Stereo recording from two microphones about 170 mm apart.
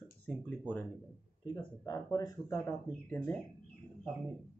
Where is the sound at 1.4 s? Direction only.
20° left (ahead or behind).